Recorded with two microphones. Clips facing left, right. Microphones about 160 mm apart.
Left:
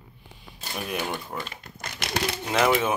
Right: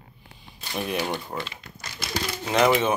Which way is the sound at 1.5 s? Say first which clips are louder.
Left 2 dB; 55° left (ahead or behind).